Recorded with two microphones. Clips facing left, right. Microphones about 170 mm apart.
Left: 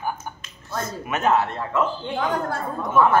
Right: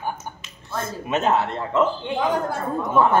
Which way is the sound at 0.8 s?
25° right (ahead or behind).